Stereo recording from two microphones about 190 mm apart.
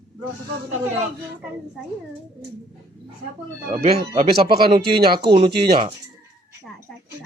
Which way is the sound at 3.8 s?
35° right (ahead or behind).